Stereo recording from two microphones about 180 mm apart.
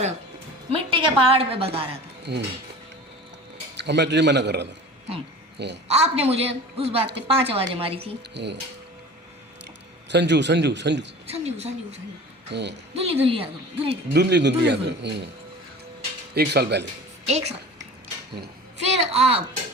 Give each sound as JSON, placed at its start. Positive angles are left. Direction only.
{"t": 0.7, "sound": "a woman's voice", "side_deg": -30}
{"t": 2.3, "sound": "a woman's voice", "side_deg": -65}
{"t": 3.8, "sound": "a woman's voice", "side_deg": -70}
{"t": 5.9, "sound": "a woman's voice", "side_deg": -35}
{"t": 8.3, "sound": "a woman's voice", "side_deg": -70}
{"t": 10.1, "sound": "a woman's voice", "side_deg": -70}
{"t": 11.3, "sound": "a woman's voice", "side_deg": -35}
{"t": 12.5, "sound": "a woman's voice", "side_deg": -70}
{"t": 12.9, "sound": "a woman's voice", "side_deg": -35}
{"t": 13.9, "sound": "a woman's voice", "side_deg": -70}
{"t": 16.3, "sound": "speech", "side_deg": -60}
{"t": 17.2, "sound": "a child's voice", "side_deg": -35}
{"t": 19.1, "sound": "a woman's voice", "side_deg": -35}